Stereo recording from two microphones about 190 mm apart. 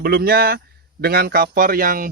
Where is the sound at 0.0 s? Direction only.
55° right (ahead or behind).